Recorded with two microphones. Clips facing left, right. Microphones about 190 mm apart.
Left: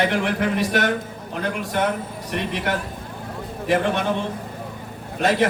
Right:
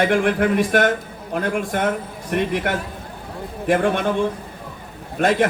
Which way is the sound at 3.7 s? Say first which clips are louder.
Right 2 dB; 50° right (ahead or behind).